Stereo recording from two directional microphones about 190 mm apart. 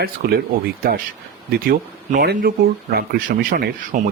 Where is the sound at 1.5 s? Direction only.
55° right (ahead or behind).